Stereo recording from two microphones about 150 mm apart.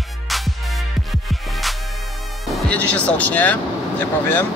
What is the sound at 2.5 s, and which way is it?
Speech, 10° left (ahead or behind).